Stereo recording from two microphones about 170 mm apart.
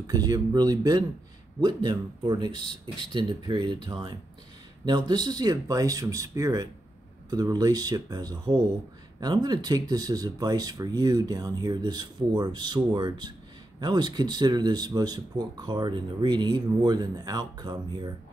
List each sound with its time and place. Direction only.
0.0 s speech: 20° right (ahead or behind)